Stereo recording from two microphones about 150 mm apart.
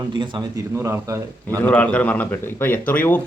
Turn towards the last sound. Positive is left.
turn(degrees=10)  # may be behind; listen again after turning